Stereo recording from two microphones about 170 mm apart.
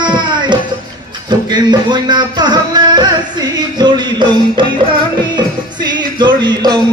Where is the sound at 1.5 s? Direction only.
25° right (ahead or behind).